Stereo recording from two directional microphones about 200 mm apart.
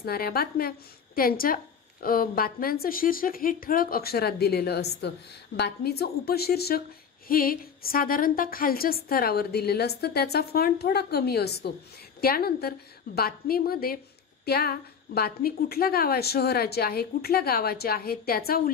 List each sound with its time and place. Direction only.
0.0 s a woman's voice: 50° left (ahead or behind)